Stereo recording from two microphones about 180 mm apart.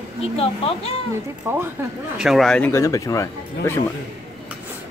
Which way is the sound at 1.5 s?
15° right (ahead or behind).